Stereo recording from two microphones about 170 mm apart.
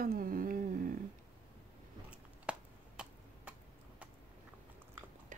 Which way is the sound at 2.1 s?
5° right (ahead or behind).